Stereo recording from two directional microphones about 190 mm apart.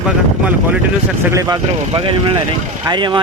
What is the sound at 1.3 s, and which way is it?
Speech, 20° right (ahead or behind).